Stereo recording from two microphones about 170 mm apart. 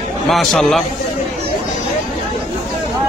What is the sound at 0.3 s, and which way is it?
Speech, centre (ahead or behind).